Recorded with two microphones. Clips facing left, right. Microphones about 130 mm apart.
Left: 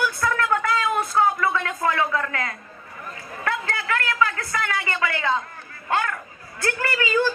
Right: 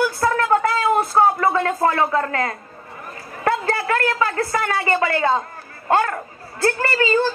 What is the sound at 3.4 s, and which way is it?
A man's voice, 35° right (ahead or behind).